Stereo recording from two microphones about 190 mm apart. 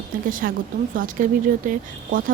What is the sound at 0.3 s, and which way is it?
Speech, 45° right (ahead or behind).